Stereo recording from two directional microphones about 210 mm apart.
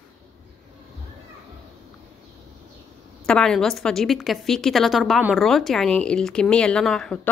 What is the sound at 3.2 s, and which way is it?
A woman's voice, 5° left (ahead or behind).